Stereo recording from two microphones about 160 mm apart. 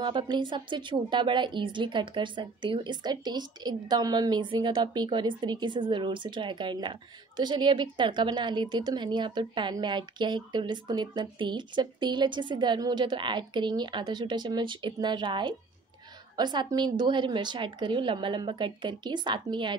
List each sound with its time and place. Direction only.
0.0 s a woman's voice: 30° right (ahead or behind)